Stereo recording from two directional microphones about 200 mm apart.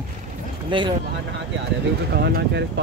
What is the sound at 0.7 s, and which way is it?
Speech, 25° right (ahead or behind).